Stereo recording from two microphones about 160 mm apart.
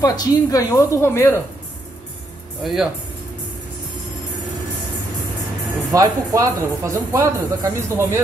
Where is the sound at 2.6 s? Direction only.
Centre (ahead or behind).